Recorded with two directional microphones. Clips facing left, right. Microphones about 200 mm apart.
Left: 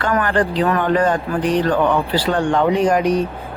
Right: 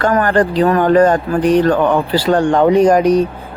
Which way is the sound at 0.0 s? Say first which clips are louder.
Right 5 dB; 40° right (ahead or behind).